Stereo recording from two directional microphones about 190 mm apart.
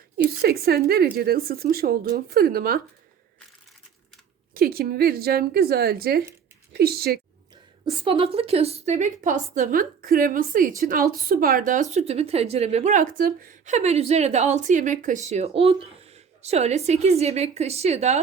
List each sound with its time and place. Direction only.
0.4 s speech: 55° right (ahead or behind)
4.5 s speech: 55° right (ahead or behind)
7.9 s a woman's voice: 30° right (ahead or behind)